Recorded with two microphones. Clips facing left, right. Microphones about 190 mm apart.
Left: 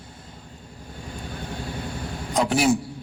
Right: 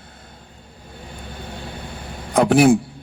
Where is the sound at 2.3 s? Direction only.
60° right (ahead or behind).